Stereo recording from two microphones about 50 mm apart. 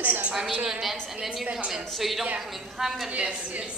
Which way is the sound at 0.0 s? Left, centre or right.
Right.